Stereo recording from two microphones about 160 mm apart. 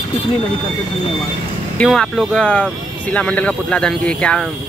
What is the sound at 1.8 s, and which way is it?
Speech, 5° left (ahead or behind).